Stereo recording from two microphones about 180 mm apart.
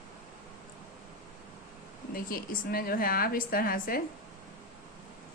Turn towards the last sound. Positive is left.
turn(degrees=50)  # may be behind; listen again after turning